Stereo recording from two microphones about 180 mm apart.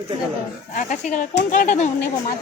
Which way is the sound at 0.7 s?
45° left (ahead or behind).